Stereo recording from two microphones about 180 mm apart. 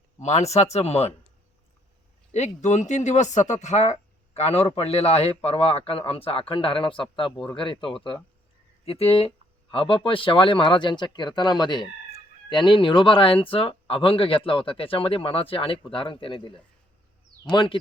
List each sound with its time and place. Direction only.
0.2 s speech: 40° left (ahead or behind)
2.3 s speech: 40° left (ahead or behind)